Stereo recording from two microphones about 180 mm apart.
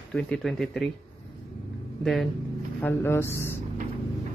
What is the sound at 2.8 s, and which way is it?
Speech, 10° left (ahead or behind).